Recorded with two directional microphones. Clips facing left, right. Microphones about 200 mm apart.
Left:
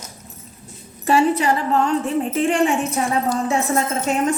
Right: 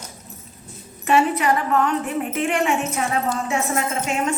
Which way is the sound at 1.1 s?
30° left (ahead or behind).